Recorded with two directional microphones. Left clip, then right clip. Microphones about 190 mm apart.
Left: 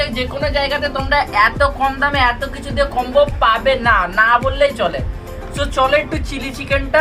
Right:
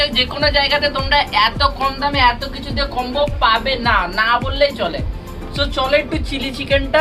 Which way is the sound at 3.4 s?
5° right (ahead or behind).